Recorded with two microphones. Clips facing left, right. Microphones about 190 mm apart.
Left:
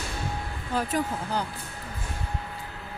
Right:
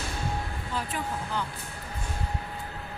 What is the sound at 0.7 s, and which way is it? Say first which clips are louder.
Speech: left 6 dB; 40° left (ahead or behind).